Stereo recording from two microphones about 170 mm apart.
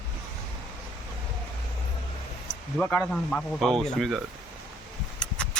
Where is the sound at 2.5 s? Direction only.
50° left (ahead or behind).